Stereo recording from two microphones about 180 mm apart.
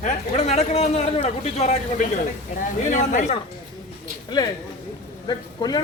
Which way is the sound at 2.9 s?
40° left (ahead or behind).